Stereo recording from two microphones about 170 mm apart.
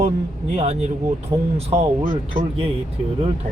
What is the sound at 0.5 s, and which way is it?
Speech, 40° right (ahead or behind).